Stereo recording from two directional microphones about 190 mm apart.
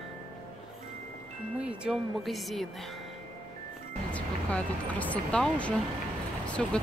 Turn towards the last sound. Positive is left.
turn(degrees=0)  # may be behind; listen again after turning